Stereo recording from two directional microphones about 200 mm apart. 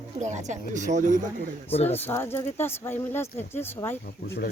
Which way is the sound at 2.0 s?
10° left (ahead or behind).